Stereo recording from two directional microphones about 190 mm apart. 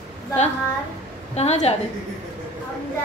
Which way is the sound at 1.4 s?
35° left (ahead or behind).